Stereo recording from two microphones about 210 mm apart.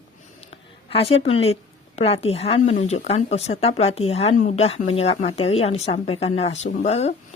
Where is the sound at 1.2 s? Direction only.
30° left (ahead or behind).